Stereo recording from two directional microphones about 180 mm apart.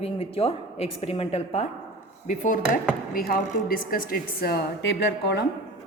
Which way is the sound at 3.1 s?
55° left (ahead or behind).